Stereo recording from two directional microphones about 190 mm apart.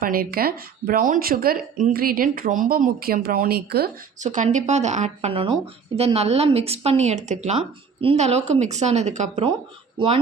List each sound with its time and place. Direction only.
0.0 s speech: 50° right (ahead or behind)
4.2 s speech: 40° right (ahead or behind)